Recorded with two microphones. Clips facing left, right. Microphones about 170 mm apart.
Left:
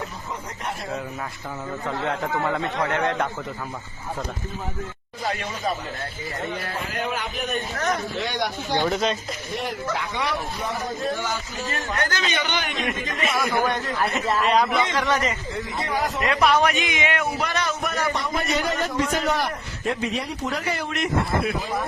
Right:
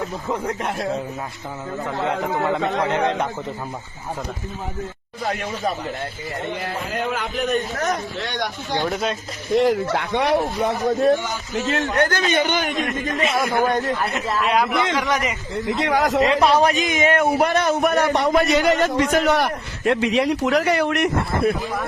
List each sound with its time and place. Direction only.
0.3 s speech: 70° right (ahead or behind)
2.0 s speech: 20° right (ahead or behind)
8.2 s speech: 5° left (ahead or behind)
9.6 s a man's voice: 80° right; by 12.9 s 45° right (ahead or behind)
13.1 s speech: 25° right (ahead or behind)
13.4 s speech: centre (ahead or behind)
13.7 s a man's voice: 40° right (ahead or behind)
14.0 s a man's voice: centre (ahead or behind)
15.6 s speech: 80° right
16.3 s a man's voice: 30° right (ahead or behind); by 21.5 s 65° right (ahead or behind)